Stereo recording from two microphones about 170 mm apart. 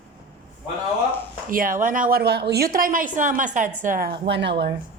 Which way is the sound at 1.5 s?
55° right (ahead or behind).